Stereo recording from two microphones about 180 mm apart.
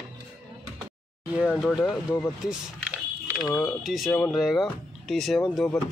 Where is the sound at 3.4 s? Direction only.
15° left (ahead or behind).